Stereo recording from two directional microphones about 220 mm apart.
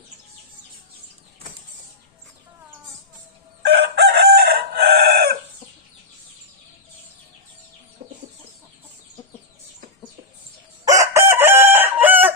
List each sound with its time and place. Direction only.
3.6 s chicken: 50° right (ahead or behind)
8.0 s chicken: 45° right (ahead or behind)
10.9 s chicken: 15° right (ahead or behind)